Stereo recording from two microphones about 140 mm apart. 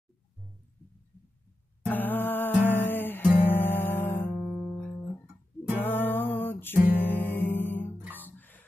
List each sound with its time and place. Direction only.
1.9 s music: 15° left (ahead or behind)
4.5 s music: centre (ahead or behind)